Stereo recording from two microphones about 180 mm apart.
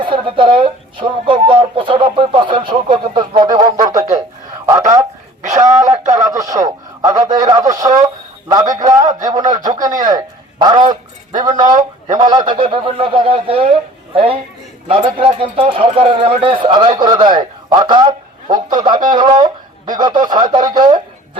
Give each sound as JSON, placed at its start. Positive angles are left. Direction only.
{"t": 0.0, "sound": "speech", "side_deg": -30}
{"t": 6.1, "sound": "radio", "side_deg": -20}
{"t": 8.9, "sound": "a sound", "side_deg": -20}
{"t": 12.0, "sound": "a sound", "side_deg": -45}
{"t": 12.3, "sound": "a man's voice", "side_deg": -25}
{"t": 20.5, "sound": "radio", "side_deg": -20}